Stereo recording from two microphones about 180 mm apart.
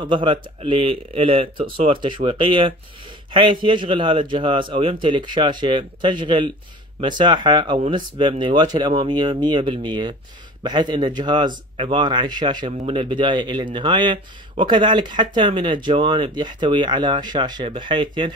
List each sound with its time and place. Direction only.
0.0 s speech: 25° right (ahead or behind)